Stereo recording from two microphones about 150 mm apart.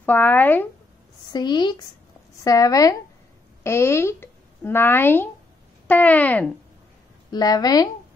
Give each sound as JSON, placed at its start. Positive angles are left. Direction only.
{"t": 0.0, "sound": "speech", "side_deg": 10}
{"t": 1.3, "sound": "a woman's voice", "side_deg": 30}
{"t": 7.2, "sound": "a woman's voice", "side_deg": 25}